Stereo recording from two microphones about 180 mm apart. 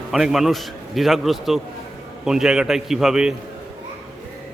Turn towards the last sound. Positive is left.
turn(degrees=-5)  # may be behind; listen again after turning